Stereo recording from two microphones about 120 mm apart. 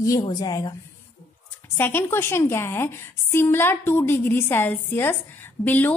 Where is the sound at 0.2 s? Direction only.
35° left (ahead or behind).